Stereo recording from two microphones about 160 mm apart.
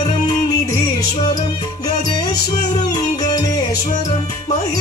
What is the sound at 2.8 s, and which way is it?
Music, 25° left (ahead or behind).